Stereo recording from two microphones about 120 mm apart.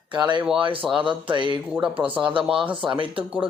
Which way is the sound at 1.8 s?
10° right (ahead or behind).